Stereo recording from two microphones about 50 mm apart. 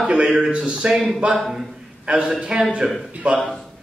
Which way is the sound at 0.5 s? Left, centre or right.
Right.